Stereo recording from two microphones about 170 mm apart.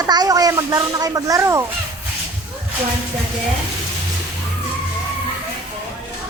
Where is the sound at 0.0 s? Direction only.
20° right (ahead or behind).